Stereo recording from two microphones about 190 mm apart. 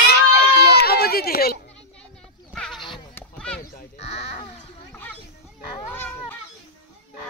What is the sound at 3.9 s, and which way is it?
Speech, 35° left (ahead or behind).